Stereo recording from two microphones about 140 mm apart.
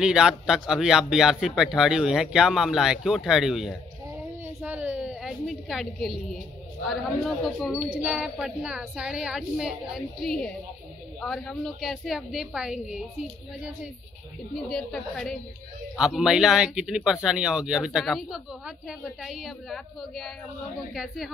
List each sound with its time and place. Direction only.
0.0 s a woman's voice: 5° right (ahead or behind)
14.5 s speech: centre (ahead or behind)